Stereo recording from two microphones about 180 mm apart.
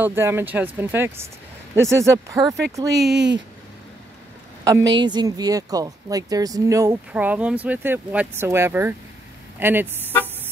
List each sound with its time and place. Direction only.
0.0 s speech: 15° right (ahead or behind)
3.0 s speech: 70° right (ahead or behind)
5.0 s speech: 25° right (ahead or behind)